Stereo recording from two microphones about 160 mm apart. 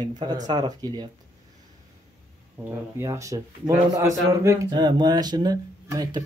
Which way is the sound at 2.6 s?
20° right (ahead or behind).